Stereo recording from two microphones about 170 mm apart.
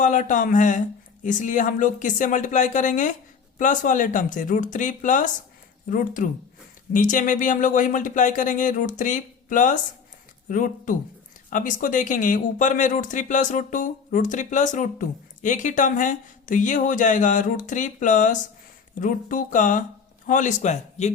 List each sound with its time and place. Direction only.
0.0 s speech: 50° left (ahead or behind)